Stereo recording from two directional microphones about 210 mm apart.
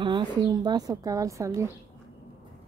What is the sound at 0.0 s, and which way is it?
A woman's voice, 20° right (ahead or behind).